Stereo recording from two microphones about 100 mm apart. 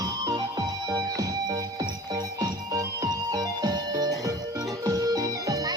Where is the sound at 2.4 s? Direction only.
40° right (ahead or behind).